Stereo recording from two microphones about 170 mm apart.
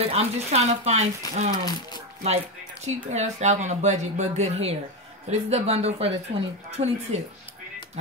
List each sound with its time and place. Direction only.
0.1 s speech: 40° right (ahead or behind)
1.2 s speech: 20° left (ahead or behind)
2.2 s speech: 40° right (ahead or behind)